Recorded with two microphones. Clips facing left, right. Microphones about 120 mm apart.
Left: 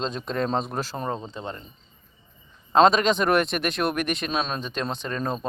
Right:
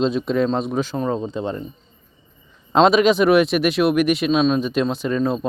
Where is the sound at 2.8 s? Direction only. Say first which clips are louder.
Right 6 dB; 5° right (ahead or behind).